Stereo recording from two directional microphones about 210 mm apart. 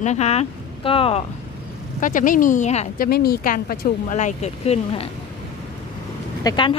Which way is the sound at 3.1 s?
45° left (ahead or behind).